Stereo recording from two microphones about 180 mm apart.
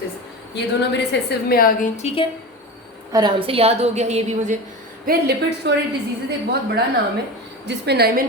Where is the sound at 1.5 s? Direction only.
55° left (ahead or behind).